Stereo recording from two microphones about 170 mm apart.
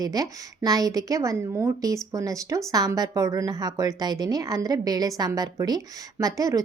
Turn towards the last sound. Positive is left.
turn(degrees=-20)  # may be behind; listen again after turning